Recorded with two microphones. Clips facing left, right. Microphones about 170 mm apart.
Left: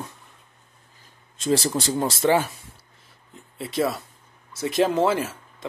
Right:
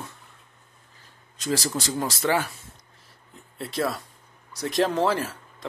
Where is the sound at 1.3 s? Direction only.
25° left (ahead or behind).